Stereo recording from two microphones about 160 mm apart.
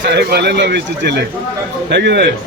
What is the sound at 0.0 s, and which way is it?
Speech, 90° right.